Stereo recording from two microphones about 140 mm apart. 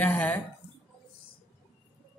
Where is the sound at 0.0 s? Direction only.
10° left (ahead or behind).